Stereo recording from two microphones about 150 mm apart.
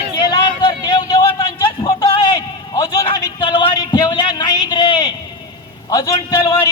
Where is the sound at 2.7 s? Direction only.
25° left (ahead or behind).